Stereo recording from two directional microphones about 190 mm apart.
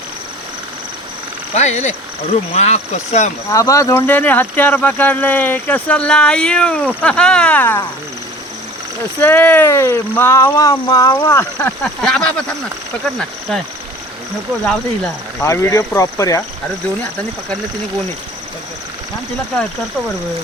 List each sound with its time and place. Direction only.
1.5 s speech: 35° left (ahead or behind)
3.5 s speech: 15° left (ahead or behind)
9.2 s speech: 10° left (ahead or behind)
13.5 s speech: 5° left (ahead or behind)
15.4 s speech: 15° left (ahead or behind)